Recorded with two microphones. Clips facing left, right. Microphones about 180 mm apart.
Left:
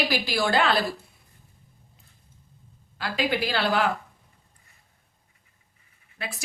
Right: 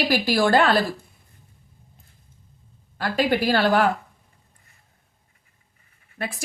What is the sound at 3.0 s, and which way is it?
Speech, 45° right (ahead or behind).